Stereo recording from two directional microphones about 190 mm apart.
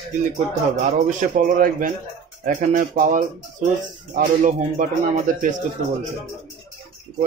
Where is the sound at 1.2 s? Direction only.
40° right (ahead or behind).